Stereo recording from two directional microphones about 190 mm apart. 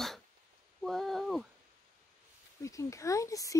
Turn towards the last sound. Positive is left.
turn(degrees=15)  # may be behind; listen again after turning